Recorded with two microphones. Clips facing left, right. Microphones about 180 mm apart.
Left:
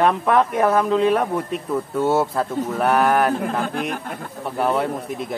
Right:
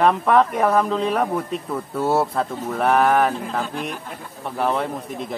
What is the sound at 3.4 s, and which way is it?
Speech, 55° left (ahead or behind).